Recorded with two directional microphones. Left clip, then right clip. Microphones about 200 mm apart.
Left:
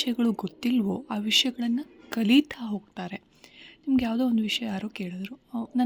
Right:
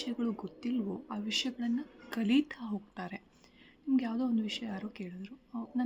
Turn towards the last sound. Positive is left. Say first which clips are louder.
# left 8 dB
turn(degrees=40)  # may be behind; listen again after turning